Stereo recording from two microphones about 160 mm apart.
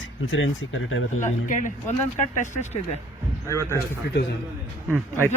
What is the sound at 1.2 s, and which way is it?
Speech, 50° left (ahead or behind).